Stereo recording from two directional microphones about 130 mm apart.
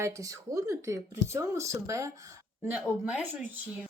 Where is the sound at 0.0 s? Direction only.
25° right (ahead or behind).